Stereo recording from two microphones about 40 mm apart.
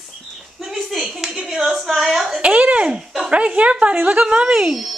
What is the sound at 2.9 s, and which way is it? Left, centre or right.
Dog, centre.